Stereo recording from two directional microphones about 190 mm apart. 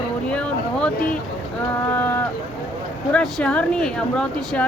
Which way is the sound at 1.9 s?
10° left (ahead or behind).